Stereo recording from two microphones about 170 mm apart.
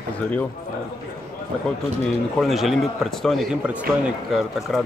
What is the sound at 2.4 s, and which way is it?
Speech, centre (ahead or behind).